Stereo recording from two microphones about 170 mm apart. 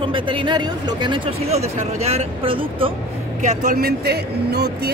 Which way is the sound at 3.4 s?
45° right (ahead or behind).